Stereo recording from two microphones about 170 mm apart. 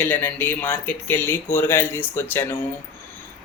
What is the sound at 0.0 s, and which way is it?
Speech, 10° left (ahead or behind).